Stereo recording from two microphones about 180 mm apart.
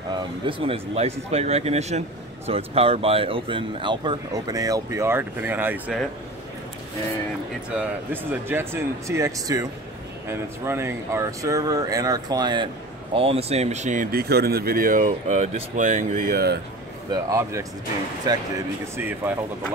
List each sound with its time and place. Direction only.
0.1 s speech: 30° right (ahead or behind); by 5.9 s 10° right (ahead or behind)
7.7 s speech: 10° right (ahead or behind); by 14.0 s 40° right (ahead or behind)
14.1 s speech: 60° right (ahead or behind)
17.1 s speech: 15° right (ahead or behind)
18.9 s speech: 10° right (ahead or behind)